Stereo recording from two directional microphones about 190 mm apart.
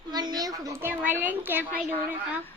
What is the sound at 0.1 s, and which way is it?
A child's voice, 20° right (ahead or behind).